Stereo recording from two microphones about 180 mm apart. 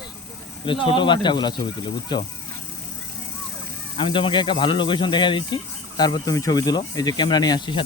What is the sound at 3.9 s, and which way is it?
Speech, 30° left (ahead or behind).